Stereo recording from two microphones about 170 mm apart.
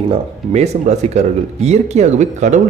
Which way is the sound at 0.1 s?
40° right (ahead or behind).